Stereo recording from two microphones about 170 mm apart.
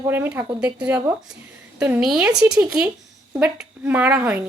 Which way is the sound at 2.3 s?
20° right (ahead or behind).